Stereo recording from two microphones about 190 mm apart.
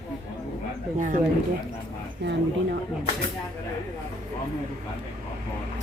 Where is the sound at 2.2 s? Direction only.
65° right (ahead or behind).